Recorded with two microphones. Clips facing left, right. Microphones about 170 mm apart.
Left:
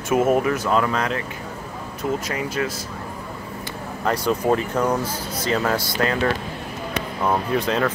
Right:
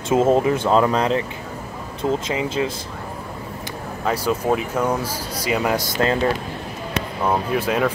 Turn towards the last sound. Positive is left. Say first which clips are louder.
# right 1 dB
turn(degrees=-10)  # may be behind; listen again after turning